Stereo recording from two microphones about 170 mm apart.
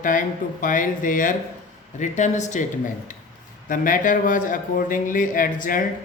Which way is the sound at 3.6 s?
50° left (ahead or behind).